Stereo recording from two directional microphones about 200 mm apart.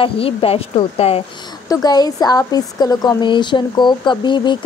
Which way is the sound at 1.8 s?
20° left (ahead or behind).